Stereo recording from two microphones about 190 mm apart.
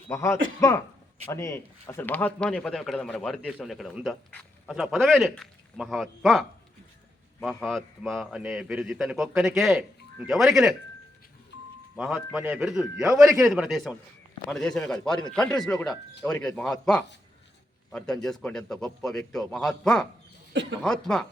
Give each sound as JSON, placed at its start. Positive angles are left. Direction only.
{"t": 0.1, "sound": "a man's voice", "side_deg": 15}
{"t": 7.4, "sound": "a man's voice", "side_deg": 0}
{"t": 11.9, "sound": "a man's voice", "side_deg": -5}
{"t": 20.5, "sound": "speech", "side_deg": -65}
{"t": 20.8, "sound": "a man's voice", "side_deg": 5}